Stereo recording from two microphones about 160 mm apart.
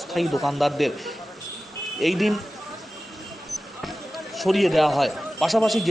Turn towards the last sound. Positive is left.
turn(degrees=0)  # may be behind; listen again after turning